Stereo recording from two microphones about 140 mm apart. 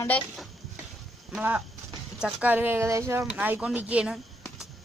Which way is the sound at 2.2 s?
10° right (ahead or behind).